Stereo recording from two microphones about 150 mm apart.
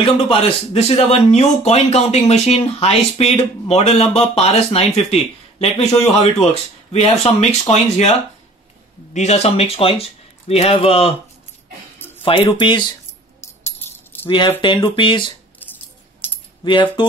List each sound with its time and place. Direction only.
0.0 s speech: 40° left (ahead or behind)
9.1 s speech: 50° left (ahead or behind)
12.2 s speech: 35° left (ahead or behind)
14.2 s speech: 30° left (ahead or behind)
16.2 s typing: 15° left (ahead or behind)
16.6 s speech: 35° left (ahead or behind)